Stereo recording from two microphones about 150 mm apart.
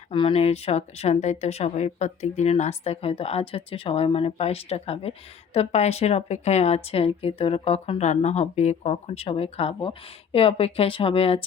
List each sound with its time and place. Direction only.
0.1 s a woman's voice: 35° left (ahead or behind)